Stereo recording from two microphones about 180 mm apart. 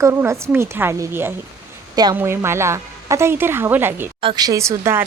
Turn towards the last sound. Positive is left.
turn(degrees=-15)  # may be behind; listen again after turning